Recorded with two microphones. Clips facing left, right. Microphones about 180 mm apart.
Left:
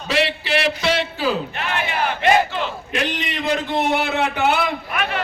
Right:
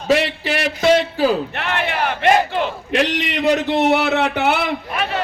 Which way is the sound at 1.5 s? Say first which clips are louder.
Right 2 dB; 60° right (ahead or behind).